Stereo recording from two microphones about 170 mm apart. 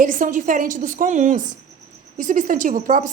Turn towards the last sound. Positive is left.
turn(degrees=-50)  # may be behind; listen again after turning